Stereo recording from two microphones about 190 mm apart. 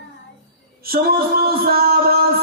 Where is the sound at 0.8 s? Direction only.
55° right (ahead or behind).